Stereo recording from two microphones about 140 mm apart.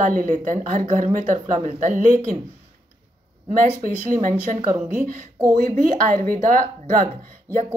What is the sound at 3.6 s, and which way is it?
A woman's voice, 70° right (ahead or behind).